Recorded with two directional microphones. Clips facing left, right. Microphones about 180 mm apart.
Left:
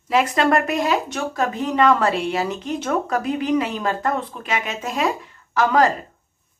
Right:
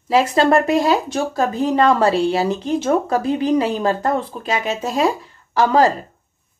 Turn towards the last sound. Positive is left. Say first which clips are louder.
# right 3 dB
turn(degrees=-30)  # may be behind; listen again after turning